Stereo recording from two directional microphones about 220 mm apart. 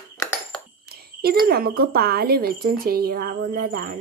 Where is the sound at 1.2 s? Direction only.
45° right (ahead or behind).